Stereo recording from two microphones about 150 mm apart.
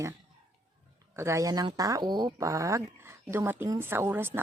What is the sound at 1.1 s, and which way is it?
Speech, 20° right (ahead or behind).